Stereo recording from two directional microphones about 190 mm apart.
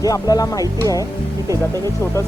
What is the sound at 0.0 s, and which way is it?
Speech, 20° left (ahead or behind).